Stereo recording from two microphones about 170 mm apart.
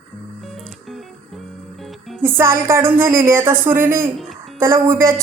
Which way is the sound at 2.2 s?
15° right (ahead or behind).